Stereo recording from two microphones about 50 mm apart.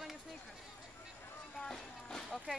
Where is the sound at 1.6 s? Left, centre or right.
Centre.